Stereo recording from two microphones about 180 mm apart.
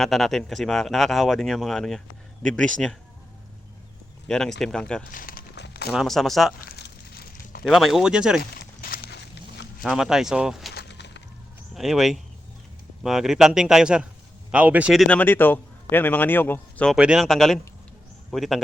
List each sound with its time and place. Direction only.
0.0 s speech: centre (ahead or behind)
4.3 s speech: 5° left (ahead or behind)
5.1 s crumpling: 50° left (ahead or behind)
5.6 s a sound: 65° left (ahead or behind)
5.9 s speech: centre (ahead or behind)
6.7 s a sound: 60° left (ahead or behind)
7.6 s speech: centre (ahead or behind)
8.4 s walk: 55° left (ahead or behind)
9.8 s speech: 5° right (ahead or behind)
10.8 s a sound: 70° left (ahead or behind)
11.7 s a man's voice: centre (ahead or behind)
17.0 s a man's voice: 5° right (ahead or behind)